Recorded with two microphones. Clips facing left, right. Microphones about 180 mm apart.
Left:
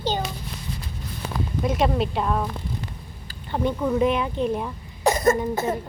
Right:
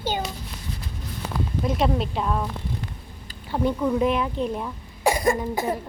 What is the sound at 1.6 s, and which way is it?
Speech, centre (ahead or behind).